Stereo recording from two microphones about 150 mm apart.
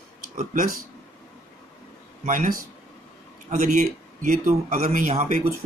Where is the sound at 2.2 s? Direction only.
65° right (ahead or behind).